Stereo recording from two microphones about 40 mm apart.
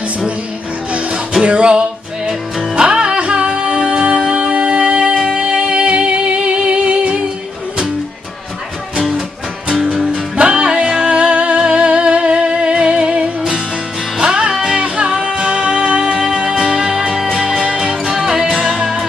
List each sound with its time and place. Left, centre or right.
1.4 s music: right
9.8 s music: centre
10.3 s music: right
14.2 s music: right